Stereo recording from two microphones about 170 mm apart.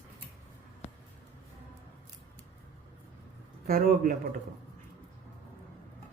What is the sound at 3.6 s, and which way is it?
Speech, 60° right (ahead or behind).